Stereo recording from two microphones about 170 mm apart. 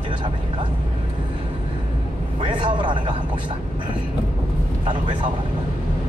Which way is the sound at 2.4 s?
30° right (ahead or behind).